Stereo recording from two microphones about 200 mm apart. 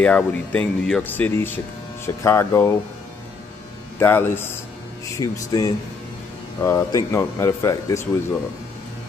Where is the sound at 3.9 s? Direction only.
10° left (ahead or behind).